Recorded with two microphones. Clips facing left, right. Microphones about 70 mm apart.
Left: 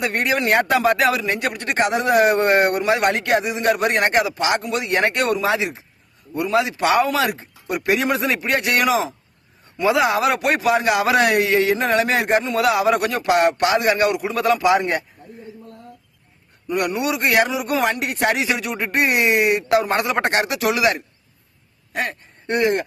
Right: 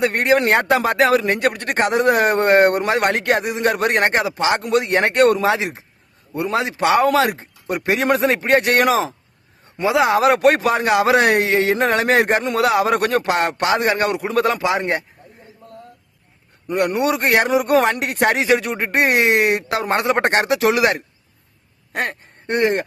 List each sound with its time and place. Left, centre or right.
0.0 s speech: right
1.2 s speech: right
4.6 s speech: right
7.1 s speech: right
9.8 s speech: right
11.8 s speech: right
14.6 s a man's voice: right
16.6 s speech: right
17.6 s speech: right
21.9 s speech: right